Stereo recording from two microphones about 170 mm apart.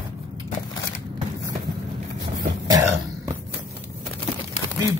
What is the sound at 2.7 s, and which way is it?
Cough, 20° right (ahead or behind).